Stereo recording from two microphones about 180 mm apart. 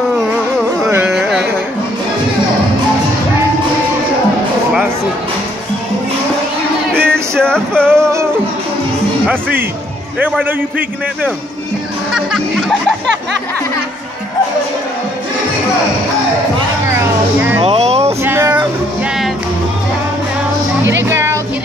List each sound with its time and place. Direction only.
0.8 s carnatic music: 5° right (ahead or behind)
6.9 s music: 5° left (ahead or behind)
7.9 s music: 15° right (ahead or behind)
9.3 s speech: 10° right (ahead or behind)
12.1 s speech: centre (ahead or behind)
16.8 s a sound: 10° right (ahead or behind)
17.6 s a sound: 35° right (ahead or behind)
18.2 s a sound: 15° right (ahead or behind)
21.1 s music: 15° right (ahead or behind)